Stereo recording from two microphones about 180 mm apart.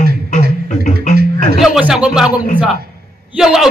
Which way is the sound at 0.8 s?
45° left (ahead or behind).